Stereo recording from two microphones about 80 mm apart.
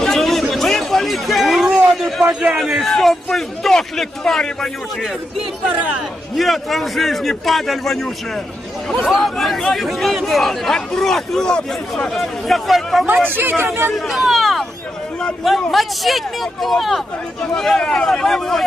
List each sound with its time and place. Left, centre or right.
0.0 s a sound: centre
2.6 s speech: centre
6.3 s speech: centre
13.2 s speech: right
13.9 s a man's voice: centre